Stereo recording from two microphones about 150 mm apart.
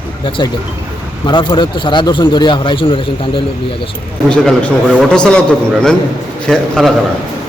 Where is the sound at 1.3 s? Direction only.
30° left (ahead or behind).